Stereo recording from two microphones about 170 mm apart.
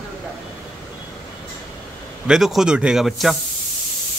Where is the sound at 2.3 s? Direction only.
Centre (ahead or behind).